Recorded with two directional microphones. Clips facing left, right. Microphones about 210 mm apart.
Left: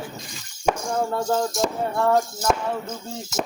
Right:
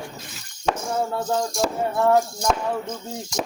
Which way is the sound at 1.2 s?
5° left (ahead or behind).